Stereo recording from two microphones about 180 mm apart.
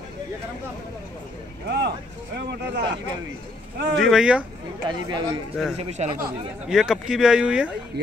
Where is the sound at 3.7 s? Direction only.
70° right (ahead or behind).